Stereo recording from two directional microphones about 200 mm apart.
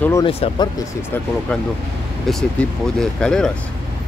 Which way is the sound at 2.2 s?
5° left (ahead or behind).